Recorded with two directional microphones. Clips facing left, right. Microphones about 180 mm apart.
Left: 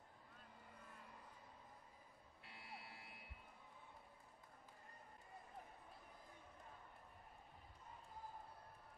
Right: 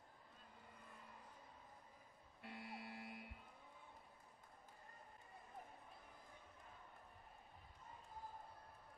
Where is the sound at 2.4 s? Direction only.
50° right (ahead or behind).